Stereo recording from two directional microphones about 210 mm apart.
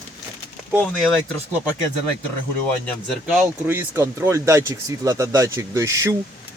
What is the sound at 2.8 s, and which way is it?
Speech, centre (ahead or behind).